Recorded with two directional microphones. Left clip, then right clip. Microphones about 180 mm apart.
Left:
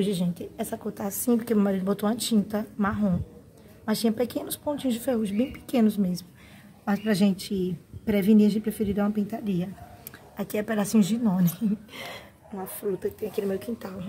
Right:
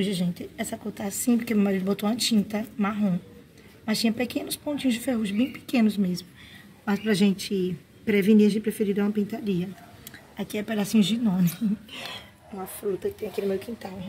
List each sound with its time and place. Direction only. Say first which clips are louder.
0.0 s a woman's voice: left 1 dB; 5° right (ahead or behind)